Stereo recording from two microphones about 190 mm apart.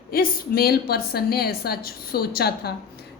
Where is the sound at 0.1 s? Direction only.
55° left (ahead or behind).